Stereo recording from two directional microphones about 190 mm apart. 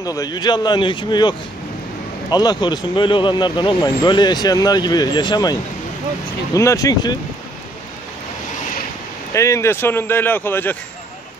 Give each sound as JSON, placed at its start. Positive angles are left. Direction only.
{"t": 0.0, "sound": "speech", "side_deg": 20}
{"t": 2.3, "sound": "a man's voice", "side_deg": 20}
{"t": 9.3, "sound": "a man's voice", "side_deg": 15}